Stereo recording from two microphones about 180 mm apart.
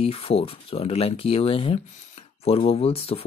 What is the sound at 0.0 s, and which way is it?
Speech, 35° left (ahead or behind).